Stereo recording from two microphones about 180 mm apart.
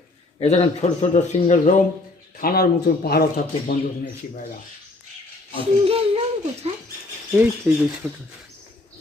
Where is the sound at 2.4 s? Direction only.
55° left (ahead or behind).